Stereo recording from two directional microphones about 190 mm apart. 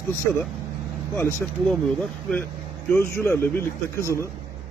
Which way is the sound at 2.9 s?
15° left (ahead or behind).